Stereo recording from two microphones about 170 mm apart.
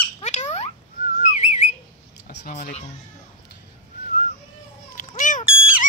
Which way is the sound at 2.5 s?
45° left (ahead or behind).